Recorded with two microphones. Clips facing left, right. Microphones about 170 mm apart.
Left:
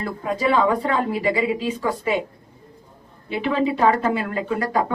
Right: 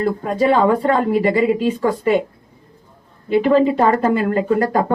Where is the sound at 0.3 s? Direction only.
45° right (ahead or behind).